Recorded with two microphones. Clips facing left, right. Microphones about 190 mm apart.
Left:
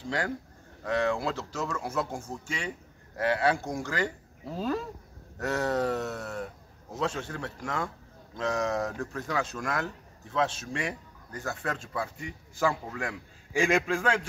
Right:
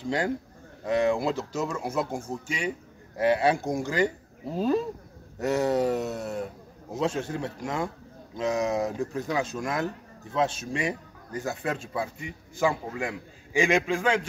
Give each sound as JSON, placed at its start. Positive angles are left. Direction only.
{"t": 0.8, "sound": "speech", "side_deg": -15}
{"t": 13.5, "sound": "a man's voice", "side_deg": 5}